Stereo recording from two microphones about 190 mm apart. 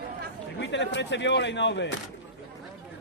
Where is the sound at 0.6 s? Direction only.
70° left (ahead or behind).